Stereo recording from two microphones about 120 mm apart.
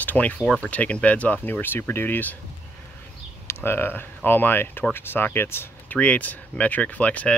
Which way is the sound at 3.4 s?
20° left (ahead or behind).